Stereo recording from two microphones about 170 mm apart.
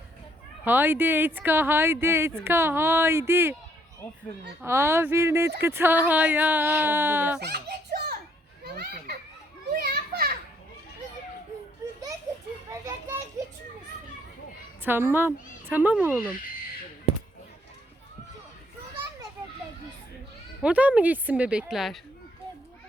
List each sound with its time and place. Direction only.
0.6 s speech: 10° right (ahead or behind)
4.6 s speech: 15° right (ahead or behind)
7.4 s children playing: 70° right (ahead or behind)
12.8 s children playing: 20° right (ahead or behind)
14.8 s speech: 10° right (ahead or behind)
20.6 s speech: 5° right (ahead or behind)